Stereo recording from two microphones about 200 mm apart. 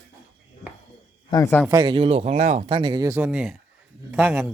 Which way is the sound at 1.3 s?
15° left (ahead or behind).